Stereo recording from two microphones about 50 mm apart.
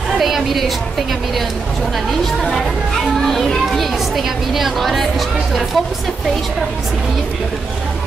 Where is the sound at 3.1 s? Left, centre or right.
Centre.